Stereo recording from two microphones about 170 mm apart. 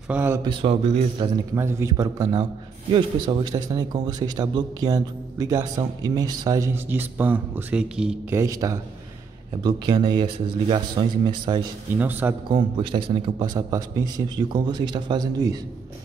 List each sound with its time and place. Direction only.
0.1 s a man's voice: 10° right (ahead or behind)
0.4 s a man's voice: 30° right (ahead or behind)
1.5 s a man's voice: 15° right (ahead or behind)
8.4 s a man's voice: 20° right (ahead or behind)
11.9 s a man's voice: 10° right (ahead or behind)
12.4 s a man's voice: 30° right (ahead or behind)